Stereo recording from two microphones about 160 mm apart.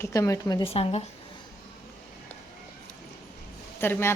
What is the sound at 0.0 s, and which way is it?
Speech, 20° left (ahead or behind).